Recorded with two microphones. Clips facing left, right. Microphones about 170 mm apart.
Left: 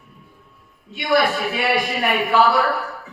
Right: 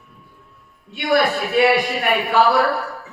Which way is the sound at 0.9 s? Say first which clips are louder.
Right 1 dB; 60° right (ahead or behind).